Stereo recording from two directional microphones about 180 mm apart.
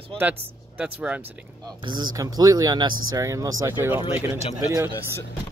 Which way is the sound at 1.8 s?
25° right (ahead or behind).